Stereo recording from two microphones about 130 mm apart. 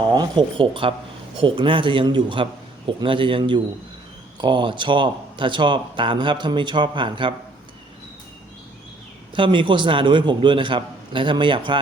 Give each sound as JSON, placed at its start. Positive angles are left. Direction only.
{"t": 0.1, "sound": "speech", "side_deg": -35}
{"t": 9.3, "sound": "speech", "side_deg": -40}